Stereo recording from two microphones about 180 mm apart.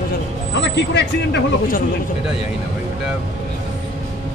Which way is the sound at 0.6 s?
70° left (ahead or behind).